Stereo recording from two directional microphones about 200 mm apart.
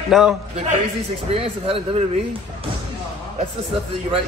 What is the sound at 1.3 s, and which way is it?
Speech, 30° right (ahead or behind).